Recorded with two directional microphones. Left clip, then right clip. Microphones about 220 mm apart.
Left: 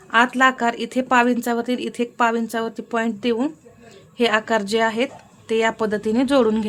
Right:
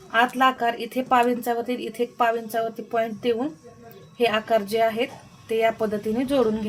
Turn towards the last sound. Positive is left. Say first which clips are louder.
# left 4 dB
turn(degrees=30)  # may be behind; listen again after turning